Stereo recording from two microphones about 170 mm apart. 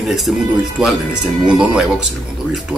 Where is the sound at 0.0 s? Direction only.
Centre (ahead or behind).